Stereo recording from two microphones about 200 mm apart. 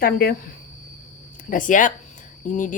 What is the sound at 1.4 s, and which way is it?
Speech, 40° left (ahead or behind).